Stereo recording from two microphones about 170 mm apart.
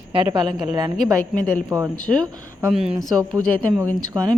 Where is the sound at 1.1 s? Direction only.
10° left (ahead or behind).